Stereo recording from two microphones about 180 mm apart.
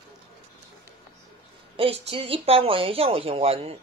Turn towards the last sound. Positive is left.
turn(degrees=-35)  # may be behind; listen again after turning